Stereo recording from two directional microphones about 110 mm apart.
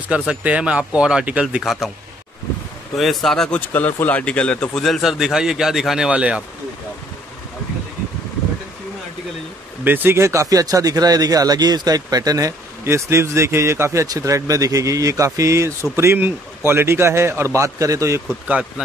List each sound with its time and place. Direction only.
0.3 s speech: 10° right (ahead or behind)
3.0 s speech: centre (ahead or behind)
9.8 s speech: 20° right (ahead or behind)